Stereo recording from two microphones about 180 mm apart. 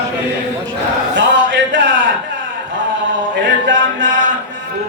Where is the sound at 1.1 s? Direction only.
75° right (ahead or behind).